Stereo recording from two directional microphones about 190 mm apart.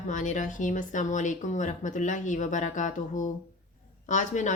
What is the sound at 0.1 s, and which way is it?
A woman's voice, 40° left (ahead or behind).